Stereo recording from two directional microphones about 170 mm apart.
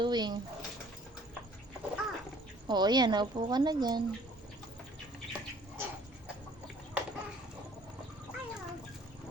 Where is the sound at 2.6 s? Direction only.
25° right (ahead or behind).